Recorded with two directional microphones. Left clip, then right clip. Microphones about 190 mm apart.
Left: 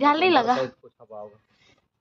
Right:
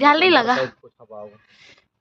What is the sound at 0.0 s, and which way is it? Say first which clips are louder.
Speech: right 4 dB; 5° right (ahead or behind).